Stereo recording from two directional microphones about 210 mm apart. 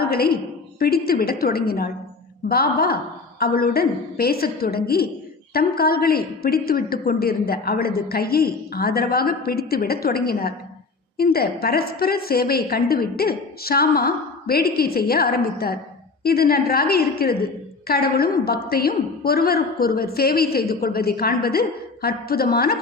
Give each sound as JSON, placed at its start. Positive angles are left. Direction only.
{"t": 0.0, "sound": "a woman's voice", "side_deg": 45}